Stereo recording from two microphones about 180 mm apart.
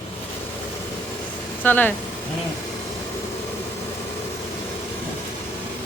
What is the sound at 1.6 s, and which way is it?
Speech, 10° left (ahead or behind).